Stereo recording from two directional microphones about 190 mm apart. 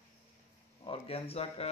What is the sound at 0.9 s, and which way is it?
Speech, 30° left (ahead or behind).